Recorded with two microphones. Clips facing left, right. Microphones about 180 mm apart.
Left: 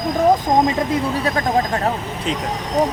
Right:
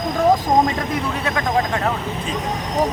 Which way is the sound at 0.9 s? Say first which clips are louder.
Left 3 dB; 35° left (ahead or behind).